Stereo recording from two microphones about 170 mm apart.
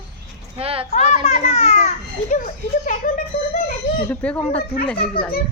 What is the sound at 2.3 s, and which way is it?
Speech, 50° left (ahead or behind).